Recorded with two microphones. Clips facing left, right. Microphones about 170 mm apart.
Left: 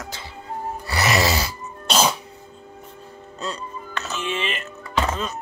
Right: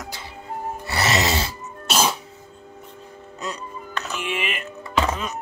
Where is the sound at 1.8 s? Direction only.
5° right (ahead or behind).